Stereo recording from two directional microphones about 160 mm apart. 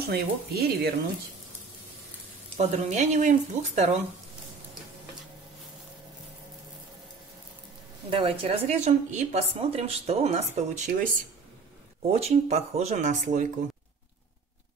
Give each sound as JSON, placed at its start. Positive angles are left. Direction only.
{"t": 0.1, "sound": "speech", "side_deg": -80}
{"t": 2.5, "sound": "speech", "side_deg": -45}
{"t": 8.1, "sound": "a woman's voice", "side_deg": -35}
{"t": 12.1, "sound": "speech", "side_deg": -40}